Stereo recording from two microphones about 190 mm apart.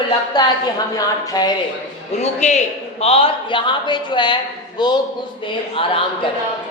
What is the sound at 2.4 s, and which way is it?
A man's voice, 35° left (ahead or behind).